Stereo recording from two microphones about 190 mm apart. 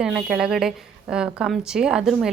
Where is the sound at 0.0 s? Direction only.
Centre (ahead or behind).